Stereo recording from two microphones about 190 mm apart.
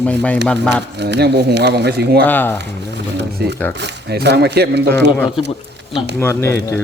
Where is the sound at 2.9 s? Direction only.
65° right (ahead or behind).